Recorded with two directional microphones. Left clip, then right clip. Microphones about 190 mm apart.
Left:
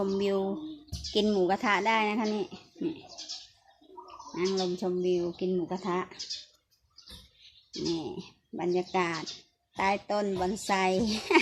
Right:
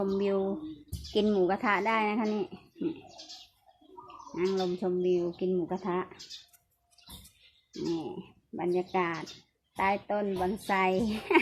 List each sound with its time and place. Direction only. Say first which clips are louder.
0.0 s speech: even; 5° left (ahead or behind)
4.4 s speech: even; 5° left (ahead or behind)
7.9 s speech: left 1 dB; 15° left (ahead or behind)